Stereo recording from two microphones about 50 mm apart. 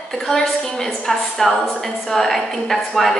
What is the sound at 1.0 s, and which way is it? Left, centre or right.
A woman's voice, centre.